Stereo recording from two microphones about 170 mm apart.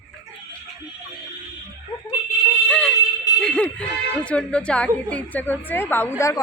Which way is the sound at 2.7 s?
5° left (ahead or behind).